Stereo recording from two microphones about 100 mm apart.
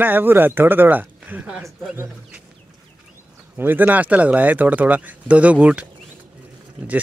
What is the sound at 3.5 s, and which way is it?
Speech, 20° right (ahead or behind).